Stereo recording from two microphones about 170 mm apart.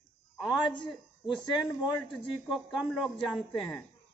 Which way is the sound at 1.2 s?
Centre (ahead or behind).